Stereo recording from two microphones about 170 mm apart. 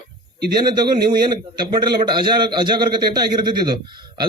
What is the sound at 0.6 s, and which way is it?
Speech, 25° right (ahead or behind).